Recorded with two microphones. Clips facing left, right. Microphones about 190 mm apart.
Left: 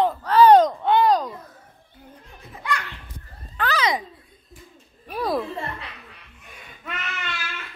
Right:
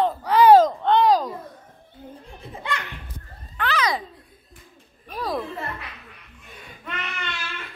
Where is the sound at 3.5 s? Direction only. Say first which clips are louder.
Left 1 dB; 35° left (ahead or behind).